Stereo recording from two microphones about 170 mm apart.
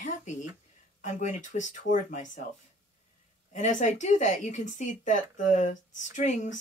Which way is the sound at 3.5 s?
45° left (ahead or behind).